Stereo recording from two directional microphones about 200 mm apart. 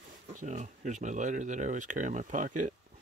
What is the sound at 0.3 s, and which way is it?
Speech, 40° right (ahead or behind).